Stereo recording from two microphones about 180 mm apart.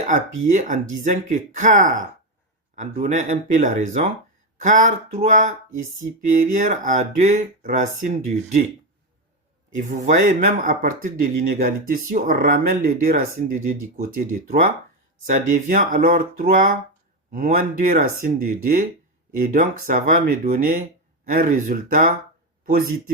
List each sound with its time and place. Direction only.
0.5 s speech: 45° right (ahead or behind)
9.7 s speech: 45° right (ahead or behind)